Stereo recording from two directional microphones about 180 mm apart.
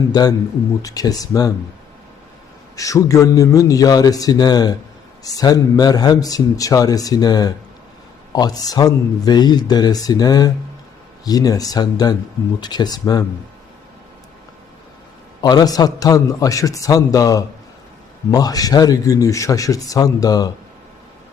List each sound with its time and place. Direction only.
0.1 s speech: 20° left (ahead or behind)
2.7 s speech: 20° left (ahead or behind)
15.4 s speech: 20° left (ahead or behind)